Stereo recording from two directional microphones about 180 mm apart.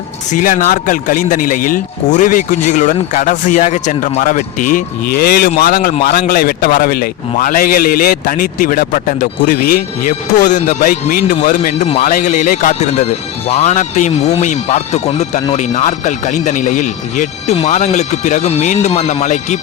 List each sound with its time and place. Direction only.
0.3 s a man's voice: 45° left (ahead or behind)
11.9 s speech: 35° left (ahead or behind)
12.1 s a man's voice: 50° left (ahead or behind)